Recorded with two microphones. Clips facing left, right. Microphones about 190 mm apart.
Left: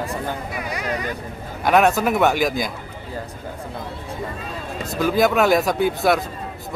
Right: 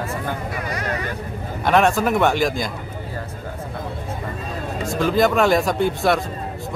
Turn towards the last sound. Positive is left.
turn(degrees=0)  # may be behind; listen again after turning